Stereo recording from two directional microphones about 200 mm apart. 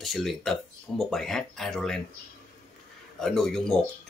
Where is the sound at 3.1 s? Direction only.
Centre (ahead or behind).